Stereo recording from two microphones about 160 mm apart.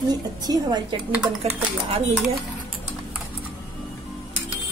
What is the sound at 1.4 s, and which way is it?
Speech, 40° right (ahead or behind).